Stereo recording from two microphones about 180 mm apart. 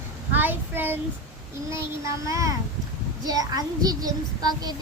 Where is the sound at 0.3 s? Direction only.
10° right (ahead or behind).